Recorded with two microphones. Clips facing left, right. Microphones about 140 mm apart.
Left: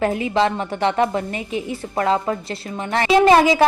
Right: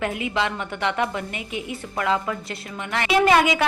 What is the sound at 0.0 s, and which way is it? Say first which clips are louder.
A woman's voice: left 6 dB; 35° left (ahead or behind).